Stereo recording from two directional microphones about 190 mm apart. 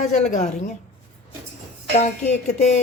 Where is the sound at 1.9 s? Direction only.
40° left (ahead or behind).